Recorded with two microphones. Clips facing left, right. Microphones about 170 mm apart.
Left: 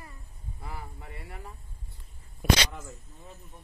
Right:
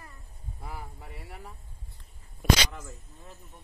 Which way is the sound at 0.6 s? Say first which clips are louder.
Even; 5° right (ahead or behind).